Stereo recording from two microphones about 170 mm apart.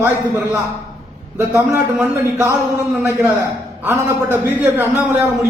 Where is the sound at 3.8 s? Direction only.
10° right (ahead or behind).